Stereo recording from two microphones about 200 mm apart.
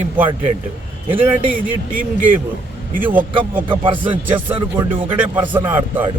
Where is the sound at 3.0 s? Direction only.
10° right (ahead or behind).